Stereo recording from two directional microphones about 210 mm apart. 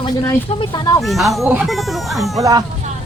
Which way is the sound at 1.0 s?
Centre (ahead or behind).